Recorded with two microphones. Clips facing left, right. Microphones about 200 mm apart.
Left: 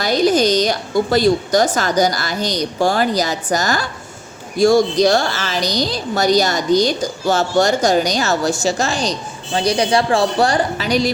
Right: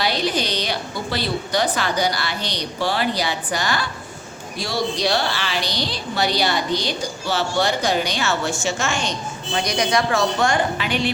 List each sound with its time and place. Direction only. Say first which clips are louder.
0.0 s a woman's voice: left 8 dB; 45° left (ahead or behind)